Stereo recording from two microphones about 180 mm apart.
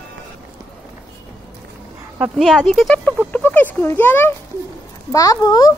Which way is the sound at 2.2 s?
Centre (ahead or behind).